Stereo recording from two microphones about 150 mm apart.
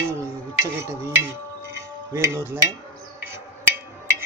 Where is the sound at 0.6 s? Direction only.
20° right (ahead or behind).